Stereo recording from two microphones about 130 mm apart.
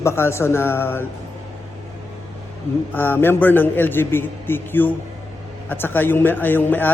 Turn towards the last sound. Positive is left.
turn(degrees=15)  # may be behind; listen again after turning